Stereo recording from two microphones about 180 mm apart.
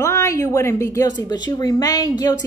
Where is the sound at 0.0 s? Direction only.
15° left (ahead or behind).